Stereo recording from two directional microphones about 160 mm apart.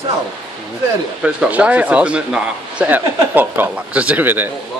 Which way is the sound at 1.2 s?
10° right (ahead or behind).